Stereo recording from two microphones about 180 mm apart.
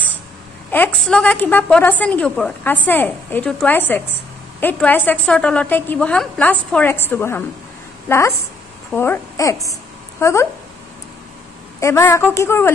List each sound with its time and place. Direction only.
1.0 s a woman's voice: 5° left (ahead or behind)
11.8 s a woman's voice: 15° left (ahead or behind)